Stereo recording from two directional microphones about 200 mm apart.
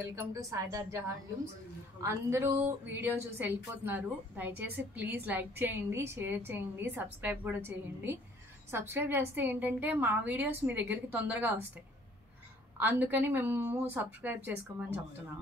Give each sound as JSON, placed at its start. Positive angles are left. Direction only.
{"t": 0.1, "sound": "a woman's voice", "side_deg": -15}
{"t": 12.7, "sound": "a woman's voice", "side_deg": -10}